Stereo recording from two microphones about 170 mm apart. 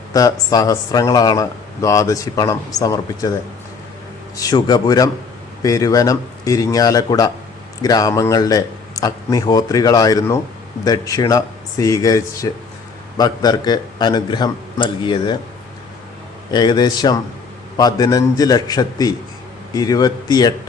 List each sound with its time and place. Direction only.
0.1 s speech: 20° left (ahead or behind)
4.4 s speech: 20° left (ahead or behind)
16.5 s speech: 25° left (ahead or behind)